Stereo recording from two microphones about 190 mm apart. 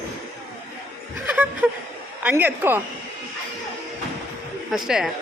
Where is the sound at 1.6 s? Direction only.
10° right (ahead or behind).